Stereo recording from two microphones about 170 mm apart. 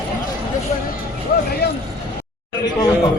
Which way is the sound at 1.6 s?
70° left (ahead or behind).